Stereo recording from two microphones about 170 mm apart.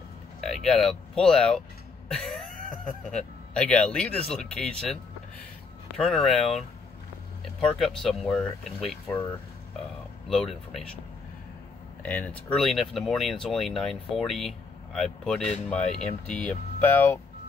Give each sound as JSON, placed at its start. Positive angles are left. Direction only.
{"t": 0.4, "sound": "speech", "side_deg": 0}
{"t": 2.0, "sound": "throat clearing", "side_deg": 5}
{"t": 3.1, "sound": "speech", "side_deg": 5}
{"t": 5.9, "sound": "speech", "side_deg": 0}
{"t": 7.8, "sound": "speech", "side_deg": 0}
{"t": 10.2, "sound": "speech", "side_deg": 0}
{"t": 12.0, "sound": "speech", "side_deg": 10}